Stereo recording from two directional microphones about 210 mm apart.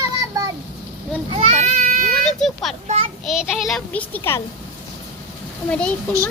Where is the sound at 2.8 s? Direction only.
30° right (ahead or behind).